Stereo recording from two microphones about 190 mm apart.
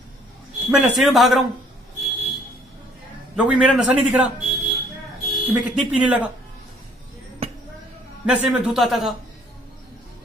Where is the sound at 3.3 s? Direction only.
5° right (ahead or behind).